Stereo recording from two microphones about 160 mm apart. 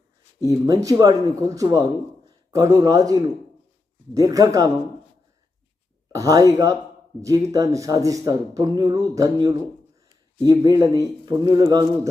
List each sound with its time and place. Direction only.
0.6 s speech: 20° right (ahead or behind)
6.1 s speech: 20° right (ahead or behind)